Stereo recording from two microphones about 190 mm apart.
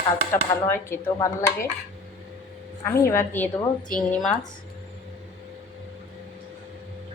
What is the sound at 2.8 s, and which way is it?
Speech, 10° left (ahead or behind).